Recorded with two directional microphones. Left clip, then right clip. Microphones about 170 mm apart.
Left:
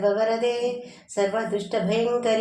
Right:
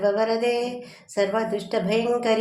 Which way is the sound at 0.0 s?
25° right (ahead or behind).